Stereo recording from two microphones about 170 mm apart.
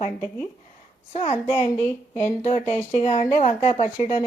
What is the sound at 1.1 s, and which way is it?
A woman's voice, 35° left (ahead or behind).